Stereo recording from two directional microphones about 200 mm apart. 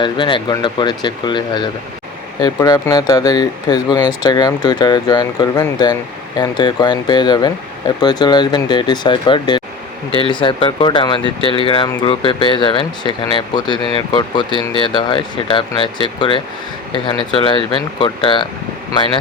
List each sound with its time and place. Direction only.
0.0 s speech: 25° left (ahead or behind)